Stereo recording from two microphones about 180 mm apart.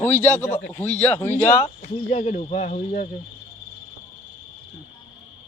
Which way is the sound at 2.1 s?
40° left (ahead or behind).